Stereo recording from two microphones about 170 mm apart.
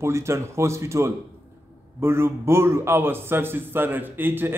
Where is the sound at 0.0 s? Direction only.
15° right (ahead or behind).